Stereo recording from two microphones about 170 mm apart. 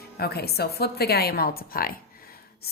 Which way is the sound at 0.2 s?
65° left (ahead or behind).